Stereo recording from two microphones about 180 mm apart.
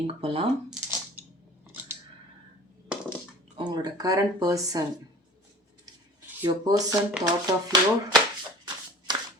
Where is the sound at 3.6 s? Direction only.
25° right (ahead or behind).